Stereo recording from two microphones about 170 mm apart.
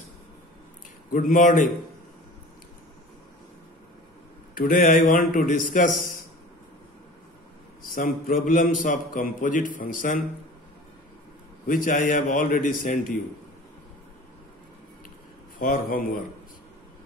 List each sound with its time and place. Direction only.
1.3 s a man's voice: 50° left (ahead or behind)
4.6 s a man's voice: 55° left (ahead or behind)
7.8 s a man's voice: 55° left (ahead or behind)
11.6 s a man's voice: 50° left (ahead or behind)
15.6 s a man's voice: 60° left (ahead or behind)